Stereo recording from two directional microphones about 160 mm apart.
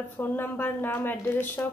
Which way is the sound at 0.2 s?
10° left (ahead or behind).